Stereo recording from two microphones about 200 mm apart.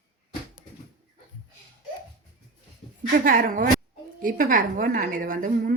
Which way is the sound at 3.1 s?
45° right (ahead or behind).